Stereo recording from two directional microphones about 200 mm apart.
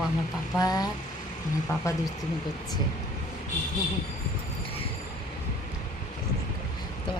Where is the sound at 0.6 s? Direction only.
20° left (ahead or behind).